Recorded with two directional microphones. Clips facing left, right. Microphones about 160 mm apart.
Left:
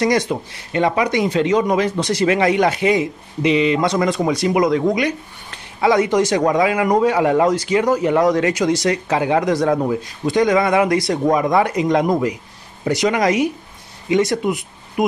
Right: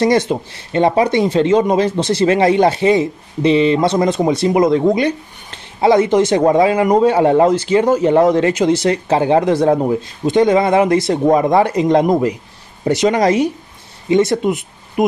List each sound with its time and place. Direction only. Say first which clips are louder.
0.0 s speech: right 4 dB; 25° right (ahead or behind)